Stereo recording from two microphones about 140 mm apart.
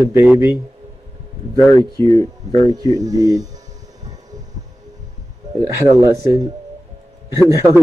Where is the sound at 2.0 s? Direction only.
25° left (ahead or behind).